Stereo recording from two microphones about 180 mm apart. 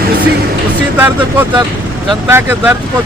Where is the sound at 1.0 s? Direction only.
10° right (ahead or behind).